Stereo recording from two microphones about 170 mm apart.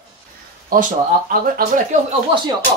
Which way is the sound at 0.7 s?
60° right (ahead or behind).